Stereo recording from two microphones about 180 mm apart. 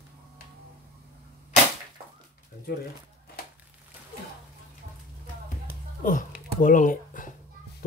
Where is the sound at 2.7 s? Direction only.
65° left (ahead or behind).